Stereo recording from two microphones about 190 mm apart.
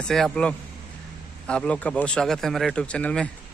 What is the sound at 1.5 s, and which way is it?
A man's voice, 5° left (ahead or behind).